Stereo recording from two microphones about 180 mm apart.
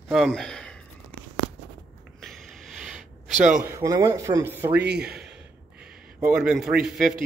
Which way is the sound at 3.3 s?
45° right (ahead or behind).